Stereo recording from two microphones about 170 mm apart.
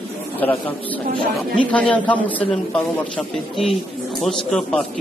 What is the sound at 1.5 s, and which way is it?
A man's voice, 10° left (ahead or behind).